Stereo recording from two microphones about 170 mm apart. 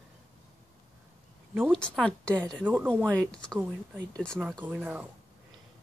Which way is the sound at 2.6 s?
10° right (ahead or behind).